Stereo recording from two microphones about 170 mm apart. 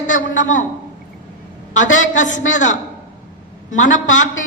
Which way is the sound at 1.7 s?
50° left (ahead or behind).